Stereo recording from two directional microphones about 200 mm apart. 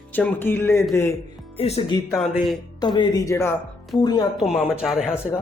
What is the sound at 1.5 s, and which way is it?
Speech, 30° left (ahead or behind).